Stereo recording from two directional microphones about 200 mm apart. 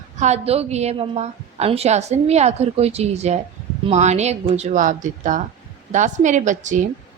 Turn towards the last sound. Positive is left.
turn(degrees=-40)  # may be behind; listen again after turning